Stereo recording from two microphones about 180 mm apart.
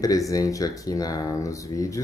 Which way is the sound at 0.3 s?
20° left (ahead or behind).